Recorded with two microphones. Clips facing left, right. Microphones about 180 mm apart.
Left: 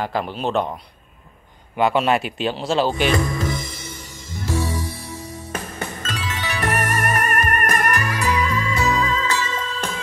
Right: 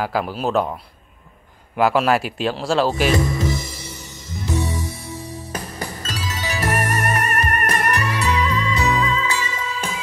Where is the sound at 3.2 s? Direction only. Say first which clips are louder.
Right 2 dB; 25° right (ahead or behind).